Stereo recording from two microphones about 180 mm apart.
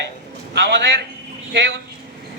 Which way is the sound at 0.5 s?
70° right (ahead or behind).